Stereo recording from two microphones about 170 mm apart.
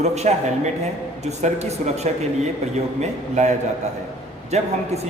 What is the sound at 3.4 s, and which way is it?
A man's voice, 45° right (ahead or behind).